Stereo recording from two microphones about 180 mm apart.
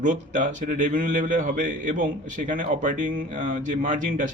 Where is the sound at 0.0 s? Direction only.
45° right (ahead or behind).